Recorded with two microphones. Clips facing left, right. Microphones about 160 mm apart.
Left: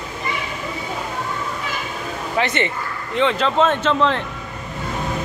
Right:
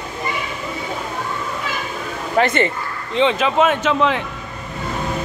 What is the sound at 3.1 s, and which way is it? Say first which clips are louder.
Speech: right 2 dB; 20° right (ahead or behind).